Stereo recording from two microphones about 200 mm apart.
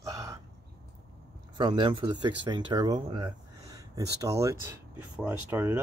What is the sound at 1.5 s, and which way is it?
Speech, 25° right (ahead or behind).